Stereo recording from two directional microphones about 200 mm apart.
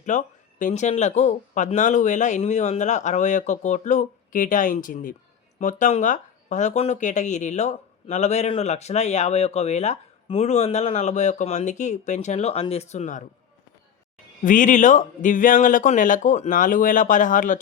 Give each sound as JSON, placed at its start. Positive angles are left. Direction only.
{"t": 0.0, "sound": "speech", "side_deg": 40}
{"t": 14.4, "sound": "speech", "side_deg": 40}